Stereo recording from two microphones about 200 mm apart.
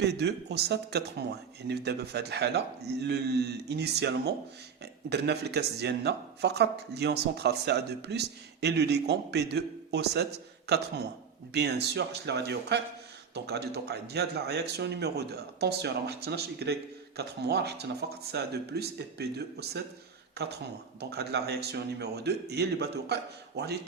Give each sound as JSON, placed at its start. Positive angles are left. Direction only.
{"t": 0.0, "sound": "speech", "side_deg": -55}
{"t": 21.0, "sound": "speech", "side_deg": -55}